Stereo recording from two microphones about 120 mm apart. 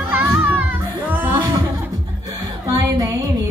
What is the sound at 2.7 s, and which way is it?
Music, 30° right (ahead or behind).